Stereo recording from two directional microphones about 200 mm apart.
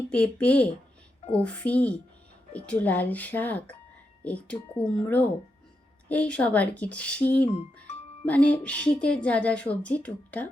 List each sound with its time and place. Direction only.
0.1 s speech: 5° left (ahead or behind)
7.5 s speech: 35° left (ahead or behind)
8.2 s speech: 5° left (ahead or behind)